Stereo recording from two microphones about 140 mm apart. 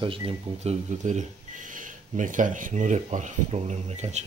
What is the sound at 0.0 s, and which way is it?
Speech, 40° right (ahead or behind).